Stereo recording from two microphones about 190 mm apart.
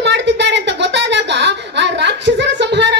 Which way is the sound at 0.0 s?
65° right (ahead or behind).